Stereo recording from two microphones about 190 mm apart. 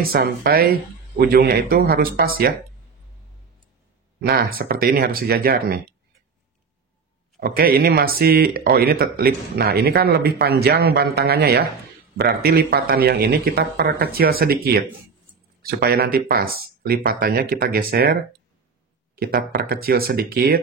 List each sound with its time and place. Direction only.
0.0 s speech: 50° right (ahead or behind)
4.2 s speech: 55° right (ahead or behind)
7.3 s speech: 50° right (ahead or behind)